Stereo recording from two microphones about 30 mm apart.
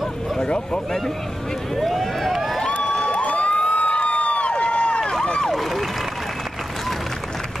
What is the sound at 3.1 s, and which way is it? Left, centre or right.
Cheering, left.